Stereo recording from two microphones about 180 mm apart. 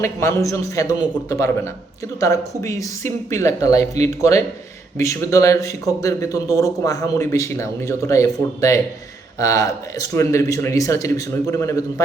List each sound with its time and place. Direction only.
0.0 s a man's voice: 15° left (ahead or behind)